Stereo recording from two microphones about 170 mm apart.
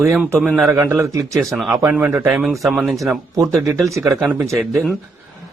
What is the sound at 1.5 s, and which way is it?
Speech, centre (ahead or behind).